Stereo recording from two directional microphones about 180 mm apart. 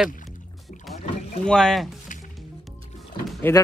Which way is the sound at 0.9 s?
35° left (ahead or behind).